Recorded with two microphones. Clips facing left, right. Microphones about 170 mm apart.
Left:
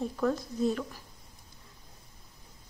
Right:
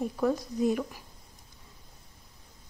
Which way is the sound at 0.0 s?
10° right (ahead or behind).